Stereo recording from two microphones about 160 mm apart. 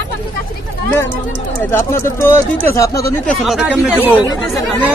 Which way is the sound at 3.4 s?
5° right (ahead or behind).